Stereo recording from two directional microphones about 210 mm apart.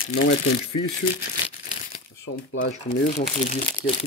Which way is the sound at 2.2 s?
60° left (ahead or behind).